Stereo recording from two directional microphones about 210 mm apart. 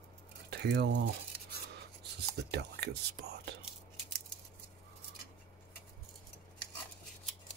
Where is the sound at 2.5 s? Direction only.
50° right (ahead or behind).